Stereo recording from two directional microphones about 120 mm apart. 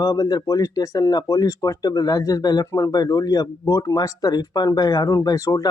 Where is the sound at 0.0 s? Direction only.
35° left (ahead or behind).